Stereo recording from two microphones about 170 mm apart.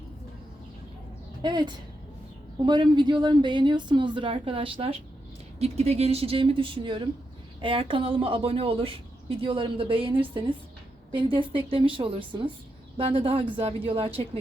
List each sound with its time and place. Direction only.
1.4 s a woman's voice: 25° right (ahead or behind)